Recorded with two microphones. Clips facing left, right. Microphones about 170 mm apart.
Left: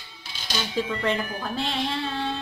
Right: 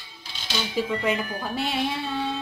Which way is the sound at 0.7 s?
10° right (ahead or behind).